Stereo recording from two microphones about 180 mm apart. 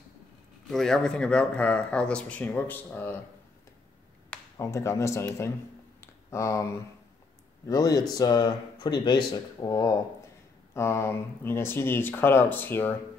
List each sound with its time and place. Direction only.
0.7 s speech: centre (ahead or behind)
4.3 s speech: 15° left (ahead or behind)
5.9 s a sound: 15° left (ahead or behind)
7.6 s speech: 20° left (ahead or behind)